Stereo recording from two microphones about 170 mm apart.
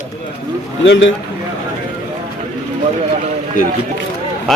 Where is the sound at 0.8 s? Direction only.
90° left.